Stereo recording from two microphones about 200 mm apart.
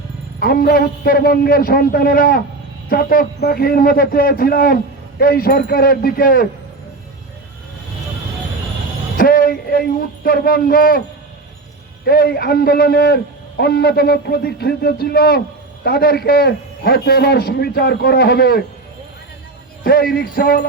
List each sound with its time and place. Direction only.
0.3 s a man's voice: 50° left (ahead or behind)
9.1 s a sound: 45° left (ahead or behind)
10.2 s a man's voice: 45° left (ahead or behind)
12.0 s a man's voice: 50° left (ahead or behind)
19.8 s a man's voice: 50° left (ahead or behind)